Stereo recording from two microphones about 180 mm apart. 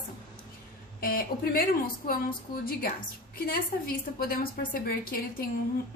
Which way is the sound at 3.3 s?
55° left (ahead or behind).